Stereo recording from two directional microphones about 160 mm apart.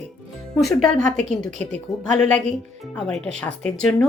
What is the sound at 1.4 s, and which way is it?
Speech, 45° right (ahead or behind).